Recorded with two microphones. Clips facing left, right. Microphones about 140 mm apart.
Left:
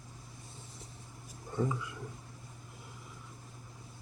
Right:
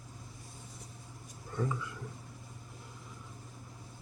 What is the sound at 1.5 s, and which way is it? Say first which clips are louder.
Speech: left 2 dB; 15° left (ahead or behind).